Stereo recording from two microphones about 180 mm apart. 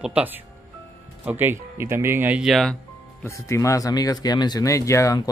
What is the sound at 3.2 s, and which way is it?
Speech, 15° left (ahead or behind).